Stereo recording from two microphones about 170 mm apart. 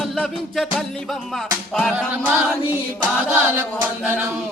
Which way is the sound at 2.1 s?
10° right (ahead or behind).